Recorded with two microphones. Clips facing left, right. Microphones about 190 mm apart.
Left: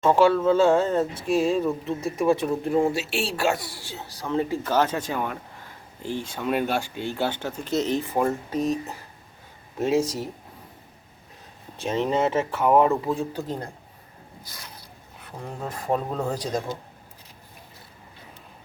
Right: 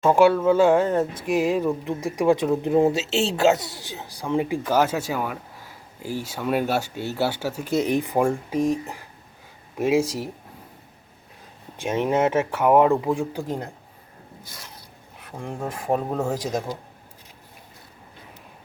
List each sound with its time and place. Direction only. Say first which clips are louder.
0.0 s speech: right 2 dB; 10° right (ahead or behind)
11.8 s speech: right 2 dB; 10° right (ahead or behind)
15.8 s speech: right 2 dB; 10° right (ahead or behind)